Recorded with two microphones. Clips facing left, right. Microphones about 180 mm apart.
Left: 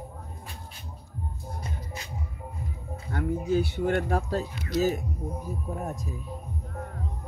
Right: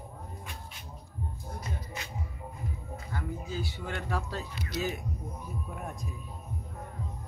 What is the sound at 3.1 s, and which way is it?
Speech, 60° left (ahead or behind).